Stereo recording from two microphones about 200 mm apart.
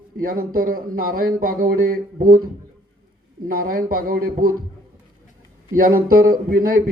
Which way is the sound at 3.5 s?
45° right (ahead or behind).